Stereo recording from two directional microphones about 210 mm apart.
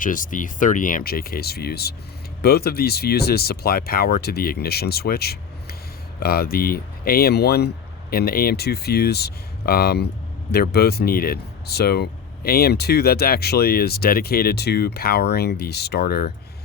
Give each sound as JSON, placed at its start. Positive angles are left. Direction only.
{"t": 0.0, "sound": "speech", "side_deg": 40}